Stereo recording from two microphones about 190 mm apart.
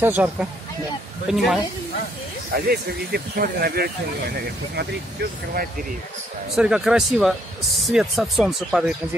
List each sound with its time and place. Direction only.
0.0 s speech: 10° right (ahead or behind)
2.5 s speech: 55° right (ahead or behind)
6.5 s speech: centre (ahead or behind)